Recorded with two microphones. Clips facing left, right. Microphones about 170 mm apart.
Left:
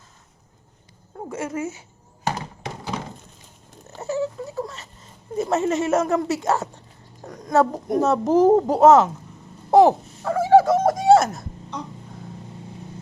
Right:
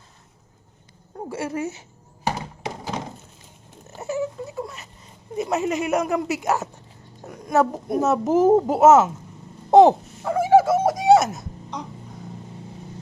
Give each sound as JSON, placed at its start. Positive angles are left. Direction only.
{"t": 1.3, "sound": "speech", "side_deg": -35}
{"t": 3.9, "sound": "patter", "side_deg": -20}
{"t": 5.4, "sound": "speech", "side_deg": -15}
{"t": 8.0, "sound": "speech", "side_deg": -5}
{"t": 9.6, "sound": "a sound", "side_deg": -20}